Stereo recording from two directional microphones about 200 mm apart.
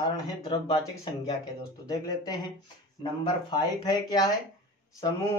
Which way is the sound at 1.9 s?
20° left (ahead or behind).